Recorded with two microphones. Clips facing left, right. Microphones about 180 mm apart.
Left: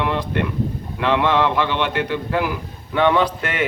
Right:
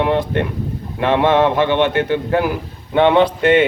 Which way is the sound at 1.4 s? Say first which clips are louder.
Right 5 dB; 20° right (ahead or behind).